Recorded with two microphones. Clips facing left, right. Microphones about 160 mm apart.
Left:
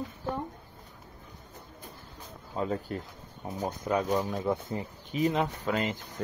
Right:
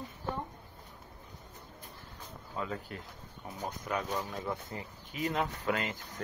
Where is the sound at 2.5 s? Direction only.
35° left (ahead or behind).